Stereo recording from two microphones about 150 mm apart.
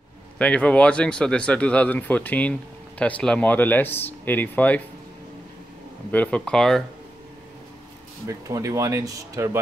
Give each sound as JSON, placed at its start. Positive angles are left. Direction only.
{"t": 0.4, "sound": "speech", "side_deg": 10}
{"t": 6.1, "sound": "speech", "side_deg": 10}
{"t": 8.3, "sound": "speech", "side_deg": -20}